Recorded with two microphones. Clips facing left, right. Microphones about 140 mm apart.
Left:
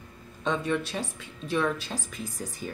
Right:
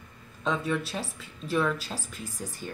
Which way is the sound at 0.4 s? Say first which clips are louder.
Left 1 dB; 5° right (ahead or behind).